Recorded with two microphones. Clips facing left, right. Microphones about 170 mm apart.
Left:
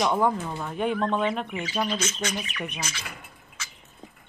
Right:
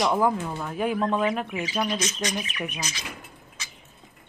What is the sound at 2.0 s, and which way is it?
Speech, 20° right (ahead or behind).